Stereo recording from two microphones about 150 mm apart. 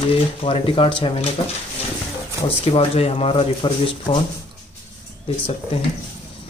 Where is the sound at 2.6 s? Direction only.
40° left (ahead or behind).